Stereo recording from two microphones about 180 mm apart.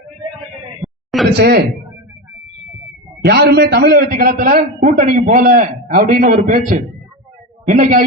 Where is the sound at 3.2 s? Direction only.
65° right (ahead or behind).